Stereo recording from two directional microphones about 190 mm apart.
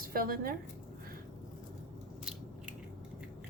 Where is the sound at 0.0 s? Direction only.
50° right (ahead or behind).